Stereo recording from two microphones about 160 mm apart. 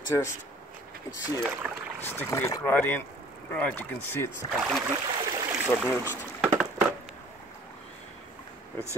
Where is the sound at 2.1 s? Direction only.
15° left (ahead or behind).